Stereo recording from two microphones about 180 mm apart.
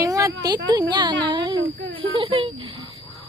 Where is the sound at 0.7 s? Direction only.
25° right (ahead or behind).